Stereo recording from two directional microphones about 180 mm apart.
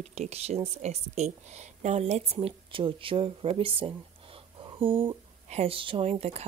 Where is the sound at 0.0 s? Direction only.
40° right (ahead or behind).